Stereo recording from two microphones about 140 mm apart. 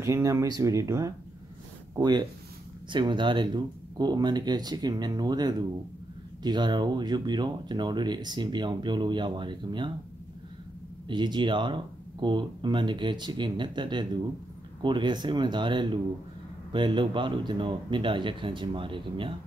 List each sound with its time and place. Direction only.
0.0 s speech: 20° right (ahead or behind)
11.1 s speech: 35° right (ahead or behind)